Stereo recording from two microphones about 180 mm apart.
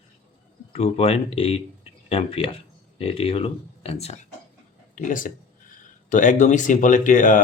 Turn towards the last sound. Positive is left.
turn(degrees=45)  # may be behind; listen again after turning